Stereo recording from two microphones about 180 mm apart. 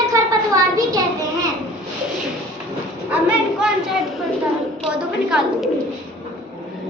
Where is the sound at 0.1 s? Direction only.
20° right (ahead or behind).